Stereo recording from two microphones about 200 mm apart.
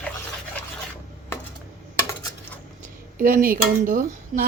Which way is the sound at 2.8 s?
45° right (ahead or behind).